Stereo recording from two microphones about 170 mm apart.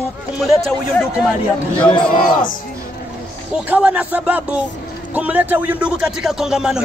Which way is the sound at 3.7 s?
10° right (ahead or behind).